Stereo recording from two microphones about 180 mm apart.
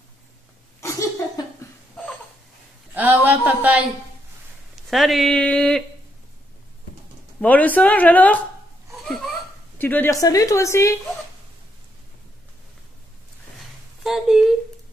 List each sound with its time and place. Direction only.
0.7 s breathing: 15° left (ahead or behind)
2.9 s speech: 10° right (ahead or behind)
7.3 s a woman's voice: 10° left (ahead or behind)
8.9 s a sound: centre (ahead or behind)
9.8 s a woman's voice: 10° left (ahead or behind)
14.0 s speech: centre (ahead or behind)